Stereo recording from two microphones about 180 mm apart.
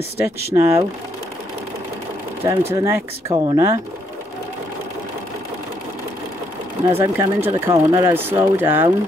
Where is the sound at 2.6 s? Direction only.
15° right (ahead or behind).